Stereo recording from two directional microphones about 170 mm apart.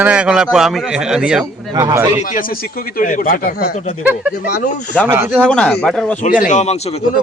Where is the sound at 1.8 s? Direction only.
15° right (ahead or behind).